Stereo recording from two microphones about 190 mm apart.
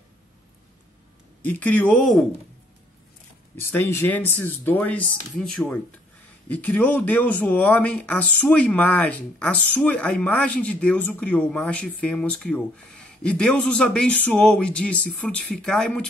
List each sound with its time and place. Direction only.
1.4 s speech: 10° left (ahead or behind)
3.5 s speech: 10° left (ahead or behind)